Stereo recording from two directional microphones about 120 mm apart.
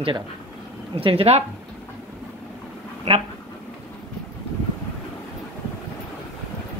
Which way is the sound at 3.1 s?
55° right (ahead or behind).